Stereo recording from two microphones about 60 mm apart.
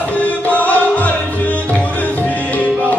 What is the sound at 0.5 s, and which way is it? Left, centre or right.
Music, left.